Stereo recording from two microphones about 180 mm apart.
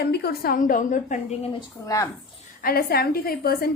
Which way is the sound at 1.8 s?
20° left (ahead or behind).